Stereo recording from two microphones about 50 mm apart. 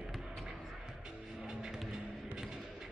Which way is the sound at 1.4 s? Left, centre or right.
Centre.